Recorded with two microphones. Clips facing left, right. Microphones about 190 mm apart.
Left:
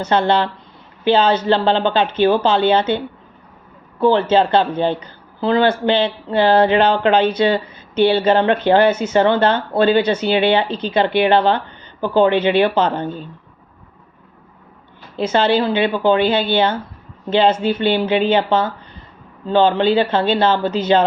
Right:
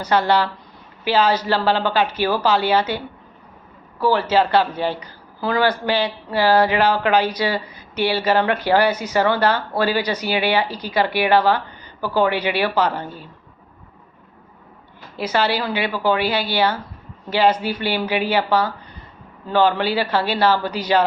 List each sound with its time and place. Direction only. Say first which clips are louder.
0.0 s speech: left 2 dB; 25° left (ahead or behind)
4.0 s speech: left 4 dB; 25° left (ahead or behind)
15.1 s speech: left 5 dB; 25° left (ahead or behind)